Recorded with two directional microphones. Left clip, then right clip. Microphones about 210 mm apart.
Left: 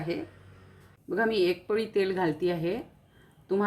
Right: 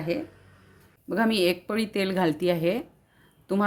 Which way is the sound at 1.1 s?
50° right (ahead or behind).